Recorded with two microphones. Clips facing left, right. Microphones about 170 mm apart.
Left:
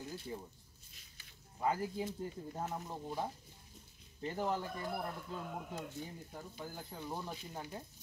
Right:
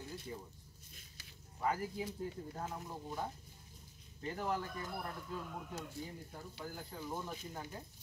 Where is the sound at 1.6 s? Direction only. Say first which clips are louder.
Left 2 dB; 25° left (ahead or behind).